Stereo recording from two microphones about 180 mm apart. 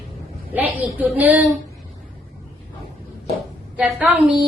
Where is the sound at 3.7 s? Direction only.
5° right (ahead or behind).